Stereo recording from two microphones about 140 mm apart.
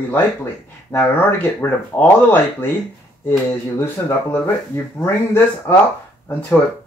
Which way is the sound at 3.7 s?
15° left (ahead or behind).